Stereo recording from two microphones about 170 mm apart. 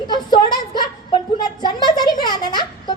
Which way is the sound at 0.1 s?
25° left (ahead or behind).